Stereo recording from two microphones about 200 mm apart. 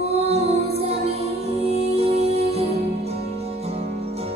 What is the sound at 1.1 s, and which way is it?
Music, 30° right (ahead or behind).